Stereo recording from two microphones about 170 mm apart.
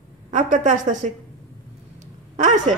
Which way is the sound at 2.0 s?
45° right (ahead or behind).